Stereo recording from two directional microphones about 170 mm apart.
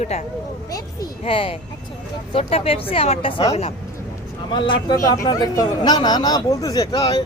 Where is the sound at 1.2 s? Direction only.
30° left (ahead or behind).